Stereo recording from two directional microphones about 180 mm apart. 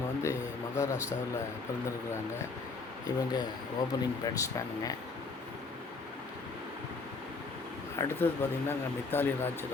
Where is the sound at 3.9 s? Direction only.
20° left (ahead or behind).